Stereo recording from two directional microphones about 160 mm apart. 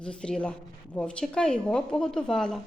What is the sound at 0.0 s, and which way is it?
A woman's voice, 5° left (ahead or behind).